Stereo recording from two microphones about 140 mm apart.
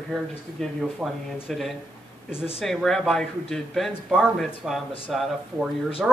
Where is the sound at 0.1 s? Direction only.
Centre (ahead or behind).